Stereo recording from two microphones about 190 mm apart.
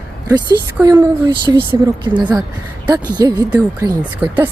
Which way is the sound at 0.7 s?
15° right (ahead or behind).